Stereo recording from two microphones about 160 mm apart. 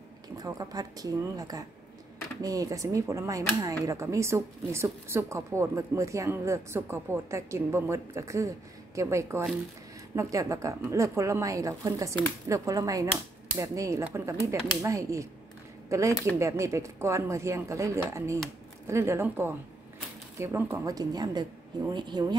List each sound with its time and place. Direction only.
0.4 s speech: 25° right (ahead or behind)